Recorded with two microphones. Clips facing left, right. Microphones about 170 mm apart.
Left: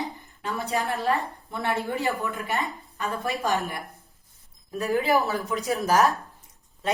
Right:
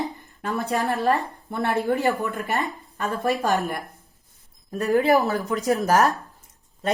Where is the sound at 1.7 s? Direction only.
Centre (ahead or behind).